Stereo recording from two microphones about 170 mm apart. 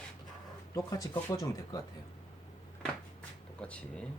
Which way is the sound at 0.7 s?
20° left (ahead or behind).